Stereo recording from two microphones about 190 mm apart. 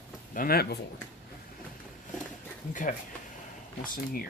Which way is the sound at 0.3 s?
50° left (ahead or behind).